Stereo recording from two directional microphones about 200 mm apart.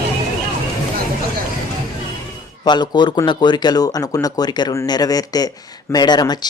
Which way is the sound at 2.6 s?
20° left (ahead or behind).